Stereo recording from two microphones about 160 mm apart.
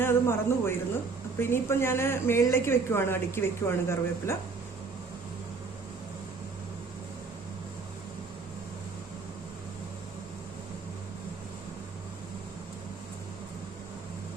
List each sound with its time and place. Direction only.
0.0 s speech: 15° left (ahead or behind)